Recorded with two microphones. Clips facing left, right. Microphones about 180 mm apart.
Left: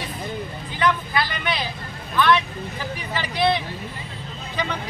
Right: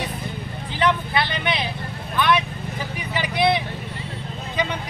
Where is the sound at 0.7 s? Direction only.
25° right (ahead or behind).